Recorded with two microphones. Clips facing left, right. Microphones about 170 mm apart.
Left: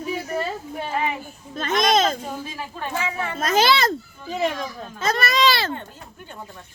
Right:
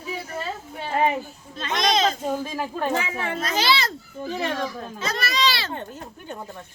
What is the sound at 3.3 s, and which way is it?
Speech, 50° left (ahead or behind).